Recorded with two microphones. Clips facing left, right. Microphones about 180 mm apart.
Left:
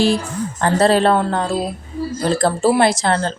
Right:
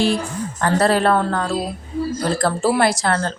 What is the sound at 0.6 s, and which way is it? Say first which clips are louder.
A woman's voice: left 2 dB; 25° left (ahead or behind).